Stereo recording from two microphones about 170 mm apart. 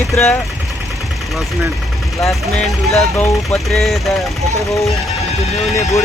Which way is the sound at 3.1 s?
15° left (ahead or behind).